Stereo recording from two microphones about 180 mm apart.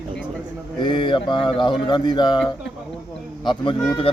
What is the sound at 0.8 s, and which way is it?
A man's voice, 25° left (ahead or behind).